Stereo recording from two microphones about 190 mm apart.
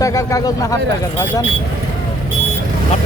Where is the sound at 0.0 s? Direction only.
15° left (ahead or behind).